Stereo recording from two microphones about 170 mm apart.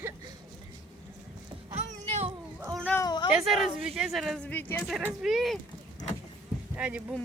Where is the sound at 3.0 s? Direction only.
25° left (ahead or behind).